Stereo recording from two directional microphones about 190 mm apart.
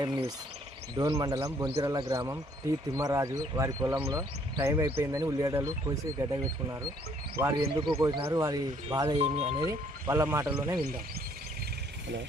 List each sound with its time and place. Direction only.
0.0 s speech: 20° right (ahead or behind)
7.7 s speech: 25° right (ahead or behind)
9.6 s speech: 15° right (ahead or behind)